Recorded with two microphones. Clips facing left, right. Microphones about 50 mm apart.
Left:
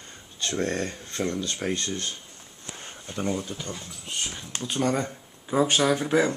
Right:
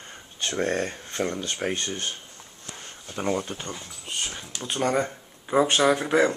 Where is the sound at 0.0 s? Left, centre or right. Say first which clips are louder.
Right 1 dB; centre.